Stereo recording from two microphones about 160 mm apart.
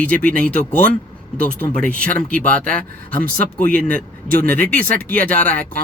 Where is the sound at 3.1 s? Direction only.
65° right (ahead or behind).